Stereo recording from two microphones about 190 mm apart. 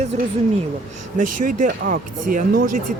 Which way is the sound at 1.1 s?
45° right (ahead or behind).